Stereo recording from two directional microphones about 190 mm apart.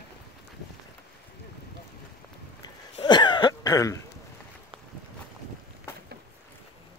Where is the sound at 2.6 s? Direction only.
25° left (ahead or behind).